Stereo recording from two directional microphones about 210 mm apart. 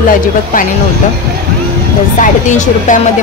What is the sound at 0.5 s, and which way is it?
Speech, 40° left (ahead or behind).